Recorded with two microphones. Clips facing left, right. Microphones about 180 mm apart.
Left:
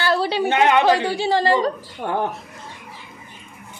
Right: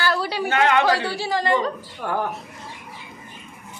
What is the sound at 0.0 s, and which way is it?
A woman's voice, 25° left (ahead or behind).